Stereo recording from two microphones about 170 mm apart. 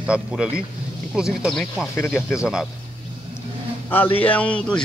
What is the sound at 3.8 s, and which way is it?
Speech, 10° left (ahead or behind).